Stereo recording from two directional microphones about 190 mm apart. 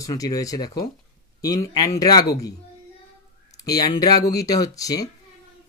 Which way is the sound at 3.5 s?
20° left (ahead or behind).